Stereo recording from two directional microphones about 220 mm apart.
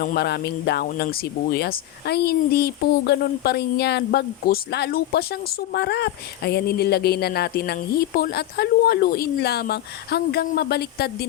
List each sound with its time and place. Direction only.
0.0 s speech: 45° left (ahead or behind)